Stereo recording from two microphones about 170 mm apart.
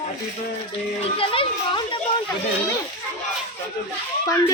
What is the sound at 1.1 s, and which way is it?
Speech, 30° left (ahead or behind).